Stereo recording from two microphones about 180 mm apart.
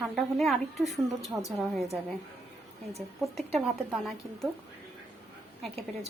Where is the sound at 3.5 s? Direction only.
Centre (ahead or behind).